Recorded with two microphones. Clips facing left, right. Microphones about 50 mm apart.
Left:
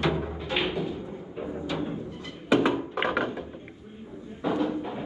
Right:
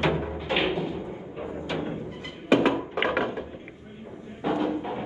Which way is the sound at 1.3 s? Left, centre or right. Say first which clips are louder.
Left 1 dB; centre.